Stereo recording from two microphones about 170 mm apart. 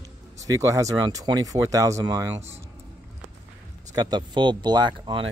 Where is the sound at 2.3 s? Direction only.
40° right (ahead or behind).